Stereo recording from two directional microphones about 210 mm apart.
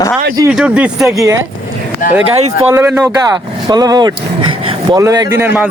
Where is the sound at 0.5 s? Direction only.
5° right (ahead or behind).